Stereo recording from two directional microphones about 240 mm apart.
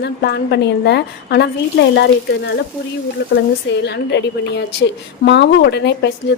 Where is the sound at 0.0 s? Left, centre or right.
Left.